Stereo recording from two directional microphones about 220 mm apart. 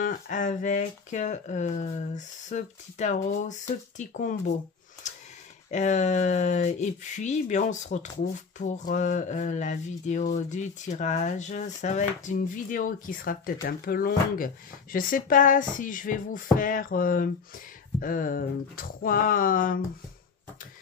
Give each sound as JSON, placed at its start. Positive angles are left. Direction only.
{"t": 0.0, "sound": "speech", "side_deg": 35}
{"t": 5.1, "sound": "a sound", "side_deg": 35}
{"t": 5.7, "sound": "speech", "side_deg": 35}